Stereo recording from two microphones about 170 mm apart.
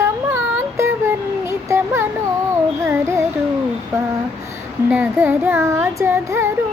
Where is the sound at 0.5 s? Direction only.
15° right (ahead or behind).